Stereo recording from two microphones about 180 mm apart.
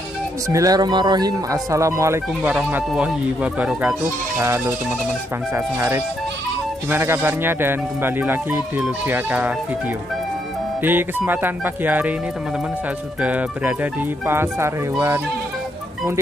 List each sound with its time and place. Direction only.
0.5 s speech: 20° right (ahead or behind)
10.8 s speech: 10° right (ahead or behind)
13.2 s speech: 5° right (ahead or behind)